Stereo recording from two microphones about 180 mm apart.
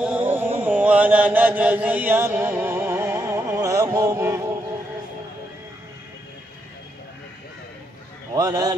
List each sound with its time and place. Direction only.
0.0 s carnatic music: 10° right (ahead or behind)
0.6 s chant: 10° right (ahead or behind)
8.4 s speech: 20° right (ahead or behind)